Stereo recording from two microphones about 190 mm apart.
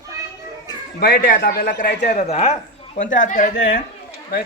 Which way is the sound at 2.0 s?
35° left (ahead or behind).